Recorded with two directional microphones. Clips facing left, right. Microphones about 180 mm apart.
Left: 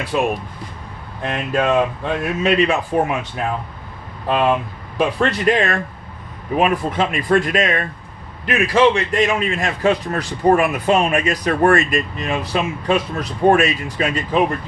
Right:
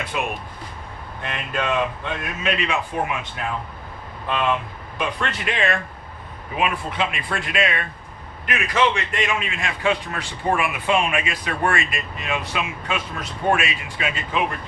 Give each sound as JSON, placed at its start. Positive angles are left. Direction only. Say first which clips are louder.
{"t": 0.1, "sound": "a man's voice", "louder": "left 10 dB", "side_deg": 35}
{"t": 4.3, "sound": "a man's voice", "louder": "left 6 dB", "side_deg": 40}
{"t": 8.4, "sound": "a man's voice", "louder": "left 7 dB", "side_deg": 35}